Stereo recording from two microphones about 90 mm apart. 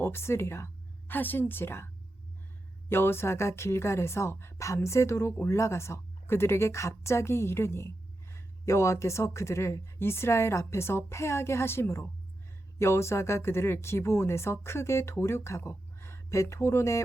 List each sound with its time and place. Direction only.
0.0 s a woman's voice: 25° left (ahead or behind)
2.9 s a woman's voice: 25° left (ahead or behind)